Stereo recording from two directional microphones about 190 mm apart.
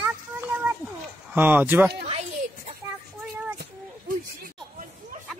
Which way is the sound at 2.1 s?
35° right (ahead or behind).